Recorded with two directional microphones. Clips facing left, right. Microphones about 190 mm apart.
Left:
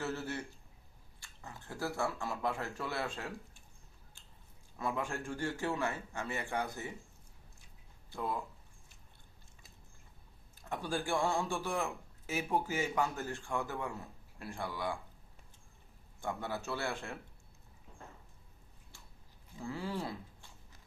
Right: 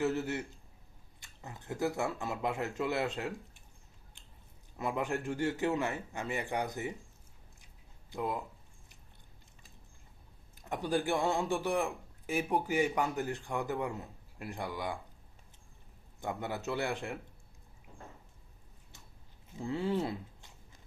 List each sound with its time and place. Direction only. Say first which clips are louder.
0.0 s speech: right 6 dB; 15° right (ahead or behind)
4.8 s speech: right 3 dB; 20° right (ahead or behind)
8.1 s speech: right 2 dB; 15° right (ahead or behind)
10.6 s speech: right 5 dB; 20° right (ahead or behind)
16.2 s speech: right 2 dB; 20° right (ahead or behind)
19.5 s speech: right 6 dB; 20° right (ahead or behind)